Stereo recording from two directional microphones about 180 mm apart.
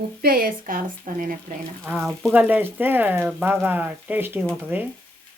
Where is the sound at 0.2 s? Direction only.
55° right (ahead or behind).